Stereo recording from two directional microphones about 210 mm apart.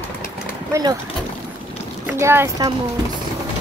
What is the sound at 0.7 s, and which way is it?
Speech, 15° right (ahead or behind).